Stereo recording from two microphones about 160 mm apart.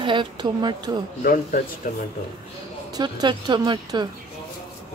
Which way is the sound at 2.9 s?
25° right (ahead or behind).